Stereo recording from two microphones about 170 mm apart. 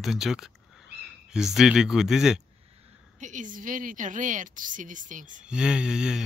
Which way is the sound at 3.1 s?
45° right (ahead or behind).